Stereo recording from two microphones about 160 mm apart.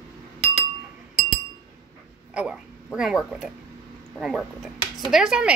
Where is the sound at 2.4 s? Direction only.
5° right (ahead or behind).